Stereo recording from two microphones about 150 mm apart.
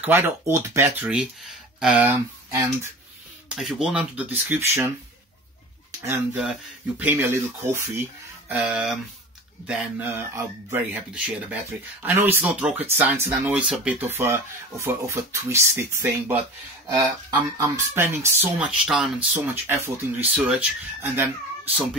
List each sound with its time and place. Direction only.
0.0 s speech: 15° right (ahead or behind)
3.4 s speech: 5° right (ahead or behind)
6.0 s speech: 10° right (ahead or behind)
8.5 s speech: 5° right (ahead or behind)
17.6 s speech: 15° right (ahead or behind)